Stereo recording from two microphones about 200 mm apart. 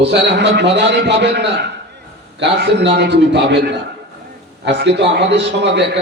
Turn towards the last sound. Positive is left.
turn(degrees=-60)  # may be behind; listen again after turning